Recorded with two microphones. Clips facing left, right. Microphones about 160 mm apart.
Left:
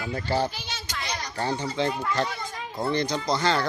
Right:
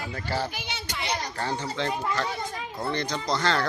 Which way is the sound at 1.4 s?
15° left (ahead or behind).